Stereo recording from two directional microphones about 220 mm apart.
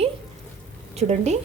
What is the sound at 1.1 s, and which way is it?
Speech, 30° right (ahead or behind).